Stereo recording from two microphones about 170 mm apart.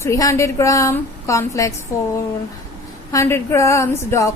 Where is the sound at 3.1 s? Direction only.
15° left (ahead or behind).